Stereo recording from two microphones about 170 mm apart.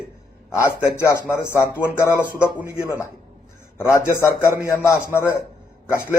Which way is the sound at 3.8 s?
15° left (ahead or behind).